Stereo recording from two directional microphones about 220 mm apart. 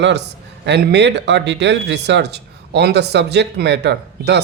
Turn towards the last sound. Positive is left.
turn(degrees=-50)  # may be behind; listen again after turning